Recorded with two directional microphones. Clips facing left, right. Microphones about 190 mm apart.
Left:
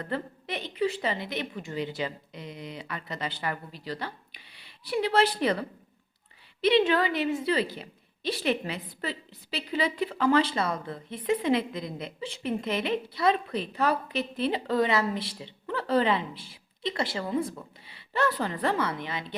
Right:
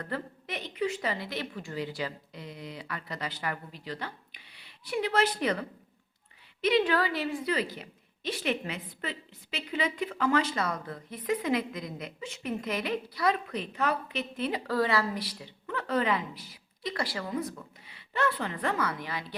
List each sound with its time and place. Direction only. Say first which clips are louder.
0.0 s a woman's voice: left 3 dB; 25° left (ahead or behind)